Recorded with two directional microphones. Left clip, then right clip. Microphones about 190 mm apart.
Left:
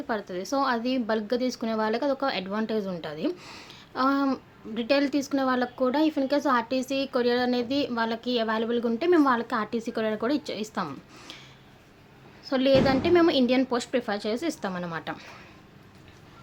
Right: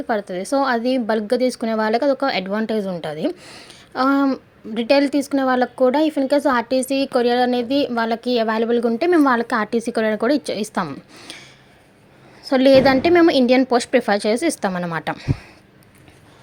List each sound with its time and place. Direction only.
0.1 s a woman's voice: 30° right (ahead or behind)